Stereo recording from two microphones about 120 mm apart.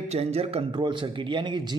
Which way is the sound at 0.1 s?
60° right (ahead or behind).